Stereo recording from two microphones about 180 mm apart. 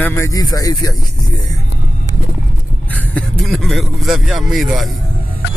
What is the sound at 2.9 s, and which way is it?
Speech, 10° left (ahead or behind).